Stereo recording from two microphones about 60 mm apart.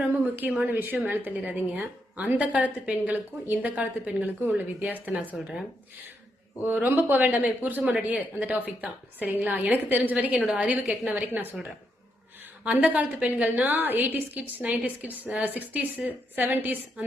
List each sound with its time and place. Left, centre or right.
0.3 s a woman's voice: right
5.4 s speech: centre
6.6 s a woman's voice: right; by 11.3 s centre
12.6 s a woman's voice: right